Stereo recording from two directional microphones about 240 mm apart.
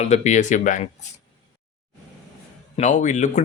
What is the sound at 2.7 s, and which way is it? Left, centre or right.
Speech, left.